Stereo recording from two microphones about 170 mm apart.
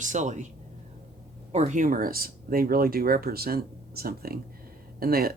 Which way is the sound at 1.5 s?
45° right (ahead or behind).